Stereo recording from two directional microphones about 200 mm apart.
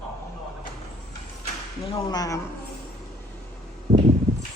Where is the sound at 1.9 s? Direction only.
20° left (ahead or behind).